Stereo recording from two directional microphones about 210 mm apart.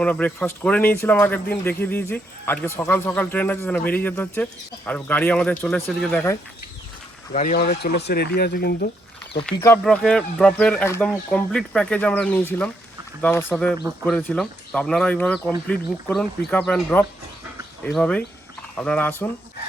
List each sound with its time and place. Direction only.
0.0 s speech: 5° left (ahead or behind)
7.3 s speech: 40° left (ahead or behind)
9.5 s speech: 10° left (ahead or behind)